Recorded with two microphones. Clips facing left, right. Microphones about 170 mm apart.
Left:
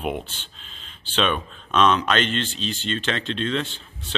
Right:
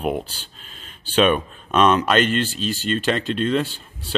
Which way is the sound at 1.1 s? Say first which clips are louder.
Right 6 dB; 10° right (ahead or behind).